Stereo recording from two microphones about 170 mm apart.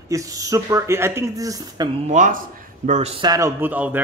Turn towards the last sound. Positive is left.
turn(degrees=-10)  # may be behind; listen again after turning